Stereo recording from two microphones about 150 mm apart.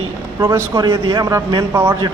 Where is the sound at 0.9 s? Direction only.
35° right (ahead or behind).